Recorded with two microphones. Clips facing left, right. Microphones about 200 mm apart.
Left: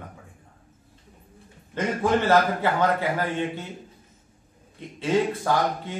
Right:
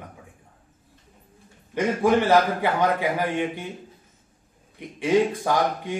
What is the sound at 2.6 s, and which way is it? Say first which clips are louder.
A man's voice: right 1 dB; 15° right (ahead or behind).